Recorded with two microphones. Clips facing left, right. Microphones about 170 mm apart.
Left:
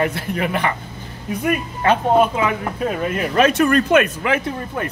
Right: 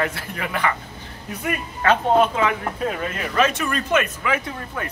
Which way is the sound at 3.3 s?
60° left (ahead or behind).